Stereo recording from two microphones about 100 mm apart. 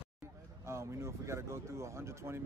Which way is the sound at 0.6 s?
30° right (ahead or behind).